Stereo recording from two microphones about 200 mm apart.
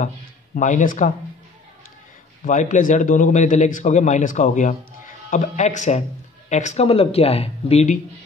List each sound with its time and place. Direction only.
0.6 s a man's voice: 40° left (ahead or behind)
2.4 s a man's voice: 40° left (ahead or behind)